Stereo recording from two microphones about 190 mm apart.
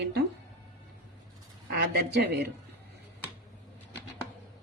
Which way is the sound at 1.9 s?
55° right (ahead or behind).